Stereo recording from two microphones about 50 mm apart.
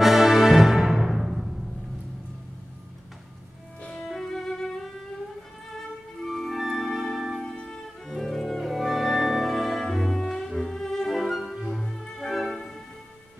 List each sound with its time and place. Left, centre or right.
0.0 s music: centre
4.1 s music: centre
6.2 s music: centre
6.6 s music: centre
6.9 s music: centre
7.2 s music: centre
7.4 s music: centre
11.8 s music: centre